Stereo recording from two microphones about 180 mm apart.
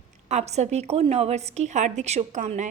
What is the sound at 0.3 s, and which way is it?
A woman's voice, 40° right (ahead or behind).